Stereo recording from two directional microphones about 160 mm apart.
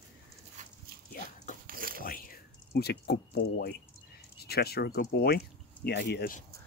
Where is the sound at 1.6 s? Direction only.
65° right (ahead or behind).